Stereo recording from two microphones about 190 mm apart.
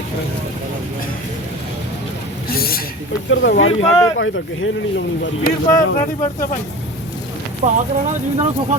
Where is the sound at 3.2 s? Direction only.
85° left.